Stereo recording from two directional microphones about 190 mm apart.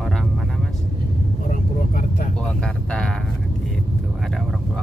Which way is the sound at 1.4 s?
45° left (ahead or behind).